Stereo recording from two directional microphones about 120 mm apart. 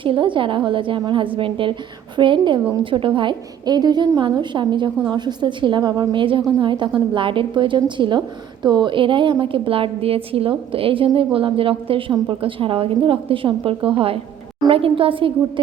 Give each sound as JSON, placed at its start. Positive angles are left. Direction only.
{"t": 0.0, "sound": "a woman's voice", "side_deg": -45}